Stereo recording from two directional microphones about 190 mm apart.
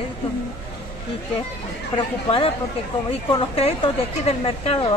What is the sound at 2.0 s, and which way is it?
A woman's voice, 30° left (ahead or behind).